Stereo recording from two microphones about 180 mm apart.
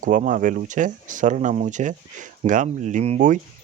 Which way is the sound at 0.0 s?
45° right (ahead or behind).